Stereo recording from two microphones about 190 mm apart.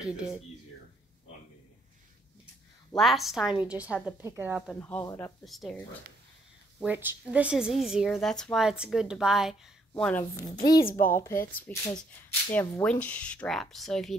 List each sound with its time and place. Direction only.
0.0 s a woman's voice: 5° right (ahead or behind)
3.0 s a woman's voice: centre (ahead or behind)
4.7 s speech: 10° left (ahead or behind)
5.4 s a woman's voice: centre (ahead or behind)
6.8 s a woman's voice: 10° right (ahead or behind)
10.3 s a woman's voice: 20° left (ahead or behind)
11.0 s a woman's voice: 45° left (ahead or behind)
11.7 s a woman's voice: 5° left (ahead or behind)